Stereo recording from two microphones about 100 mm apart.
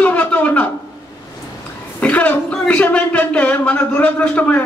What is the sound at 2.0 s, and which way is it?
Speech, 15° left (ahead or behind).